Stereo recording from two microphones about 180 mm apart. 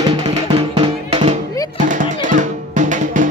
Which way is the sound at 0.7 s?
30° right (ahead or behind).